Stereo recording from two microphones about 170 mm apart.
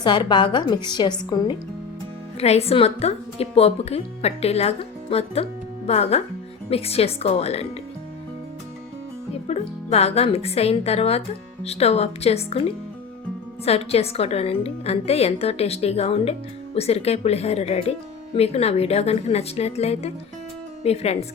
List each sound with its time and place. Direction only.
0.0 s a woman's voice: 25° left (ahead or behind)
2.4 s speech: 40° left (ahead or behind)
9.5 s speech: 40° left (ahead or behind)